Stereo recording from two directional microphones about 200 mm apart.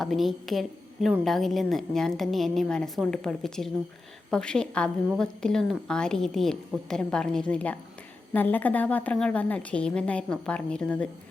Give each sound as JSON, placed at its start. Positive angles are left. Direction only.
{"t": 0.0, "sound": "a woman's voice", "side_deg": 0}